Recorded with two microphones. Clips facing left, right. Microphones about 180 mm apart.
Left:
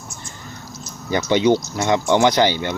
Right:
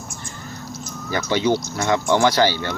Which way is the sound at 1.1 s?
20° left (ahead or behind).